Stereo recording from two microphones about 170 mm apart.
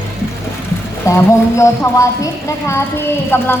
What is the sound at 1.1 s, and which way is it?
A woman's voice, 15° left (ahead or behind).